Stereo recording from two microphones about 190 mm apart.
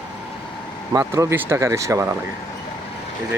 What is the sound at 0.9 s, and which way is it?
Speech, 15° right (ahead or behind).